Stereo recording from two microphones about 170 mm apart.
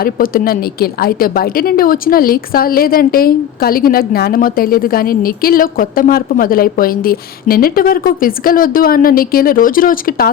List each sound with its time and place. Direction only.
0.0 s a woman's voice: 60° left (ahead or behind)